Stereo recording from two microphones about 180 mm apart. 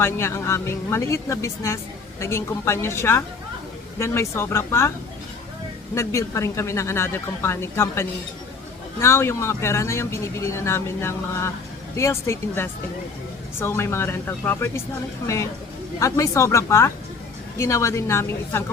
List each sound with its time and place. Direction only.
0.0 s speech: 15° left (ahead or behind)
5.9 s speech: 15° left (ahead or behind)
16.0 s speech: 15° left (ahead or behind)